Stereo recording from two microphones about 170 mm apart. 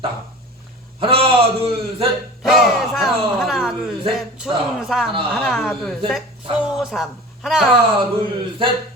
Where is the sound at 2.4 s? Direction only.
Centre (ahead or behind).